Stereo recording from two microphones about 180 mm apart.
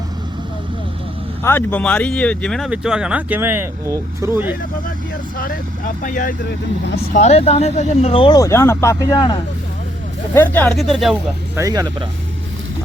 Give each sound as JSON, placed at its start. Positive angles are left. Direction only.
{"t": 1.5, "sound": "speech", "side_deg": 10}
{"t": 6.0, "sound": "speech", "side_deg": 45}
{"t": 10.3, "sound": "speech", "side_deg": 10}
{"t": 11.5, "sound": "speech", "side_deg": -20}